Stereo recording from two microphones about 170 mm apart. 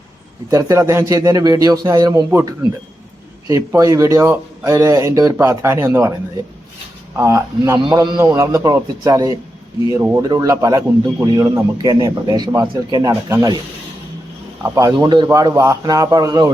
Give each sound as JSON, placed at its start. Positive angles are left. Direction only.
{"t": 0.5, "sound": "a man's voice", "side_deg": -20}
{"t": 7.2, "sound": "a man's voice", "side_deg": -15}
{"t": 14.6, "sound": "a man's voice", "side_deg": -20}